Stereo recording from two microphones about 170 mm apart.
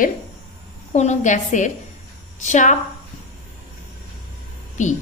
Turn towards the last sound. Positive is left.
turn(degrees=45)  # may be behind; listen again after turning